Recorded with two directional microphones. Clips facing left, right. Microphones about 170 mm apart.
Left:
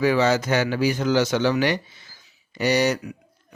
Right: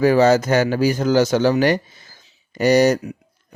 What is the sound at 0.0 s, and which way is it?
Speech, 45° right (ahead or behind).